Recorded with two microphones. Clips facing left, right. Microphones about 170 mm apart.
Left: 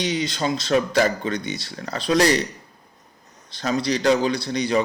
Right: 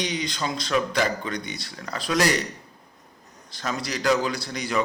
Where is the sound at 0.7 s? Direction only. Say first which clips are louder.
Left 5 dB; 40° left (ahead or behind).